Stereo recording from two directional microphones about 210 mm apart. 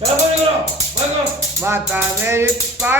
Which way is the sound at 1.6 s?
10° right (ahead or behind).